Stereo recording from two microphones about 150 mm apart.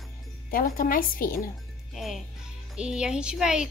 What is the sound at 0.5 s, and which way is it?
Speech, 70° left (ahead or behind).